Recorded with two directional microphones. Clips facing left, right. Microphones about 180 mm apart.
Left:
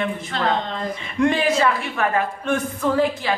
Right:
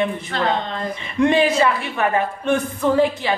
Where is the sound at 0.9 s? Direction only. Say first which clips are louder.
Right 3 dB; 20° right (ahead or behind).